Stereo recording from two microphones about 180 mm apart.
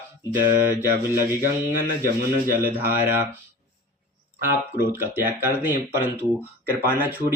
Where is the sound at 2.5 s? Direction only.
50° right (ahead or behind).